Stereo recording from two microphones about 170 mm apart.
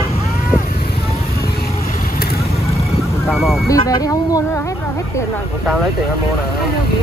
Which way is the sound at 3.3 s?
Centre (ahead or behind).